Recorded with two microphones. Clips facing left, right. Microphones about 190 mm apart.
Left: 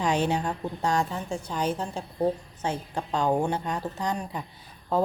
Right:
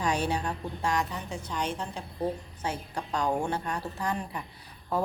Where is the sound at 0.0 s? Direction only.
25° left (ahead or behind).